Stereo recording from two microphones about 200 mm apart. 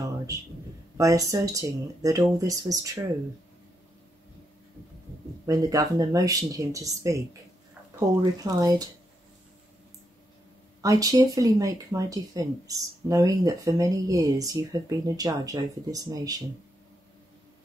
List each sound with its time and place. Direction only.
0.9 s speech: 15° right (ahead or behind)
5.5 s speech: 15° right (ahead or behind)
10.8 s speech: 15° right (ahead or behind)